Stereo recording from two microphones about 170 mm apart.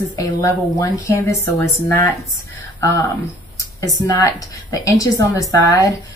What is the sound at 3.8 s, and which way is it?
Speech, 20° left (ahead or behind).